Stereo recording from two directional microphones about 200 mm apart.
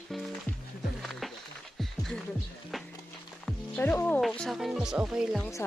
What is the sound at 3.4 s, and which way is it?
Speech, 10° left (ahead or behind).